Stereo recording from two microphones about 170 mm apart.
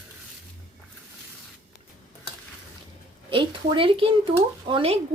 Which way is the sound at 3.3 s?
30° right (ahead or behind).